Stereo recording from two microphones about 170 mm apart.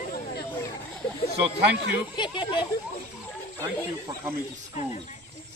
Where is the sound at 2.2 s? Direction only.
30° left (ahead or behind).